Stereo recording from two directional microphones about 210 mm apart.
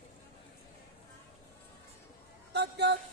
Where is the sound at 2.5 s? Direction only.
55° right (ahead or behind).